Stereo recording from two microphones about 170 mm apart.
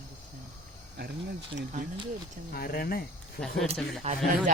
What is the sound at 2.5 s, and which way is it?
Speech, 60° left (ahead or behind).